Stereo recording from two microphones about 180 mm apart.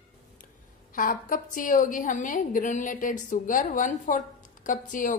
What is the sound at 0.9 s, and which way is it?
A woman's voice, 50° left (ahead or behind).